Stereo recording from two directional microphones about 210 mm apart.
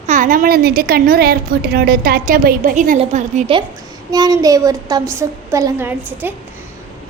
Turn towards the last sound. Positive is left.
turn(degrees=-10)  # may be behind; listen again after turning